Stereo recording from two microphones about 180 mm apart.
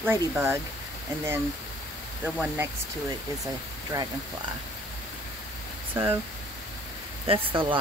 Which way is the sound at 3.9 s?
15° right (ahead or behind).